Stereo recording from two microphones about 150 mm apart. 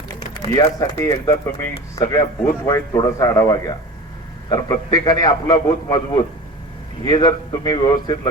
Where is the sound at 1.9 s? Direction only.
20° left (ahead or behind).